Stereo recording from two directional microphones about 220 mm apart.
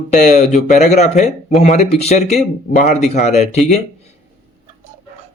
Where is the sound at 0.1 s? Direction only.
30° left (ahead or behind).